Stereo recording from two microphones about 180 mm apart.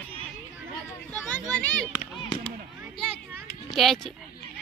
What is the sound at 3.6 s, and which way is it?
Speech, centre (ahead or behind).